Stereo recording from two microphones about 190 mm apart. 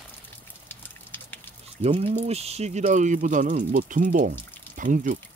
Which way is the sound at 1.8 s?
30° right (ahead or behind).